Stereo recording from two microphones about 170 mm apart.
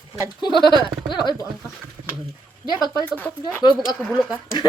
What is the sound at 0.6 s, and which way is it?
Speech, 25° right (ahead or behind).